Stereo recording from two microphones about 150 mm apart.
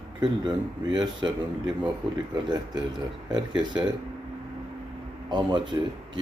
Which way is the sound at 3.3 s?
30° right (ahead or behind).